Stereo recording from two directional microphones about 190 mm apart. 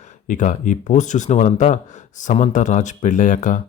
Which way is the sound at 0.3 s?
45° left (ahead or behind).